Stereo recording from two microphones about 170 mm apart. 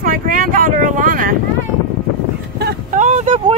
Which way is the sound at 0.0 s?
55° right (ahead or behind).